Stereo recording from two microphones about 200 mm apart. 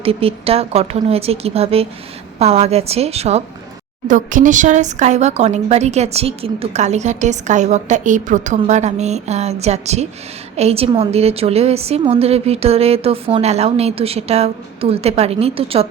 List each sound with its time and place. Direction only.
0.0 s speech: 30° right (ahead or behind)